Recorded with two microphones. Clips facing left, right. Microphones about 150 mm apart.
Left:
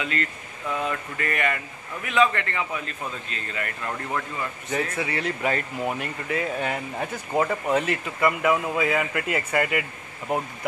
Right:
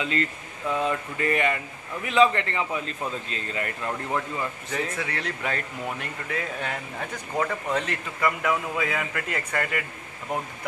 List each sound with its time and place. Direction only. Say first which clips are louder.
0.0 s a man's voice: right 2 dB; 25° right (ahead or behind)
3.8 s speech: right 1 dB; 15° right (ahead or behind)
4.9 s speech: left 4 dB; 5° left (ahead or behind)
7.3 s speech: left 4 dB; 20° left (ahead or behind)
7.7 s speech: left 4 dB; 5° left (ahead or behind)